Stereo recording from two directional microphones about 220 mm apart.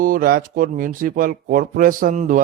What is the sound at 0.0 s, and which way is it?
Speech, 40° right (ahead or behind).